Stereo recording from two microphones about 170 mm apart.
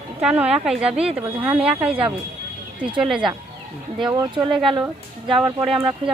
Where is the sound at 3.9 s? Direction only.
25° right (ahead or behind).